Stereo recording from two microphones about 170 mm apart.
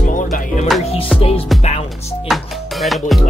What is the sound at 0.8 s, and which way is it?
Music, 35° left (ahead or behind).